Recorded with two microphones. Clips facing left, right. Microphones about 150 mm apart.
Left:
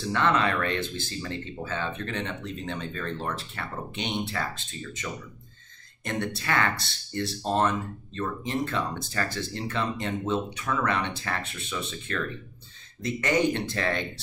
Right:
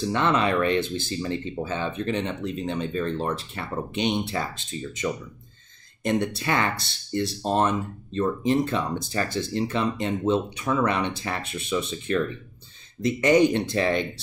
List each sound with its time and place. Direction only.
0.1 s speech: 20° right (ahead or behind)